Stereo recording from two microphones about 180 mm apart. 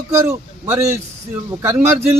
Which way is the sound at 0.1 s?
15° right (ahead or behind).